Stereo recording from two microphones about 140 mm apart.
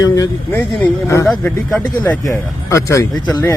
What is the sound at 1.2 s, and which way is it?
Speech, 5° left (ahead or behind).